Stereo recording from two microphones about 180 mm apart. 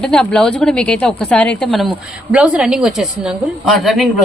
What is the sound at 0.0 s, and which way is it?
A woman's voice, 5° left (ahead or behind).